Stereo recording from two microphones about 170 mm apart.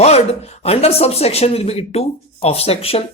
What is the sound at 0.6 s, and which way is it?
Speech, 35° left (ahead or behind).